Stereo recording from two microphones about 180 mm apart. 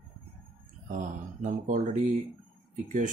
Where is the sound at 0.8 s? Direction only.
45° right (ahead or behind).